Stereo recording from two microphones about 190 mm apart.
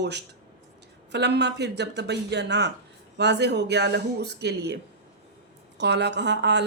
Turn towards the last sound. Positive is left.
turn(degrees=-65)  # may be behind; listen again after turning